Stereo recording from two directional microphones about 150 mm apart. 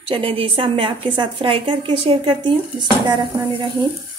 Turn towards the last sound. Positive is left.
turn(degrees=-30)  # may be behind; listen again after turning